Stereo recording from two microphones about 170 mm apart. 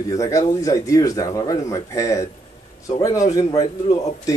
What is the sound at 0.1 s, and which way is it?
Speech, 20° left (ahead or behind).